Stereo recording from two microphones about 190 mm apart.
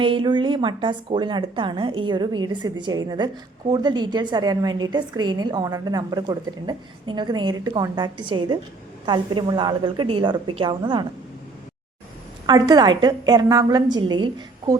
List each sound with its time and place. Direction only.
0.0 s a woman's voice: 25° right (ahead or behind)
12.5 s a woman's voice: 20° right (ahead or behind)